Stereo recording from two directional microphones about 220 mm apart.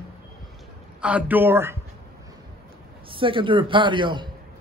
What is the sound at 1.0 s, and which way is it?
Speech, 5° right (ahead or behind).